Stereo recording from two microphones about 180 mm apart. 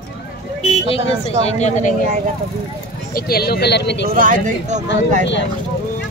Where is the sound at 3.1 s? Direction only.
60° left (ahead or behind).